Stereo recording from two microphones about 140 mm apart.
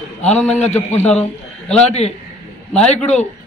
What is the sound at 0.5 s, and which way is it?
Speech, 55° left (ahead or behind).